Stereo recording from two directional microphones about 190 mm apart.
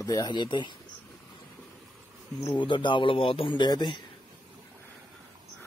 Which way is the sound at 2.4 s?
25° left (ahead or behind).